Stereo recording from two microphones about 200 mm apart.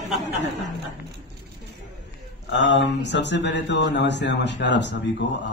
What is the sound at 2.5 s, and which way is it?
Speech, 60° left (ahead or behind).